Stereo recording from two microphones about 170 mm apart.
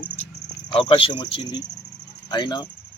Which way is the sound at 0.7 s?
30° left (ahead or behind).